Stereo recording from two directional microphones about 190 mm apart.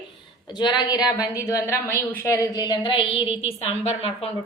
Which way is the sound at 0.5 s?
20° left (ahead or behind).